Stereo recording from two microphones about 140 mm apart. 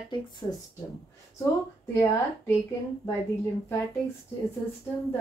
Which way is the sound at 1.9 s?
20° left (ahead or behind).